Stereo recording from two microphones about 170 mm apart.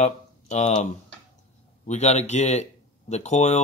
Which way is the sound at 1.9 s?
40° left (ahead or behind).